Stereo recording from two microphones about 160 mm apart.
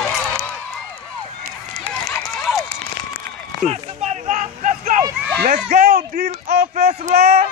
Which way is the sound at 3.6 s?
45° right (ahead or behind).